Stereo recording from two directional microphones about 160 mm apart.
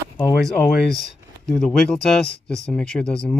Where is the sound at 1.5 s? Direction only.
Centre (ahead or behind).